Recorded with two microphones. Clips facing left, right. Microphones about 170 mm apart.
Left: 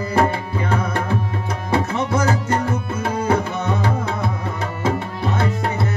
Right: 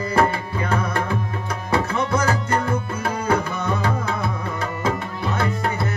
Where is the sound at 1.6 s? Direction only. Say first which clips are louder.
Left 1 dB; 25° left (ahead or behind).